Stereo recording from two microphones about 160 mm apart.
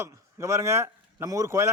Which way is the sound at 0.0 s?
15° right (ahead or behind).